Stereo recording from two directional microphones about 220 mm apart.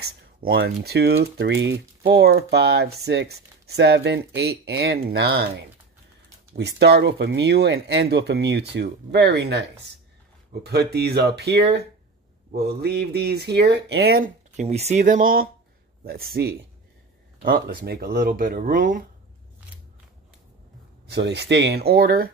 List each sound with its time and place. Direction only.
0.0 s speech: 45° right (ahead or behind)
14.2 s speech: 30° right (ahead or behind)
21.1 s speech: 50° right (ahead or behind)